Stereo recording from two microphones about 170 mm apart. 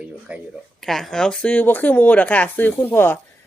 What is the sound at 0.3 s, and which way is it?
A woman's voice, 5° right (ahead or behind).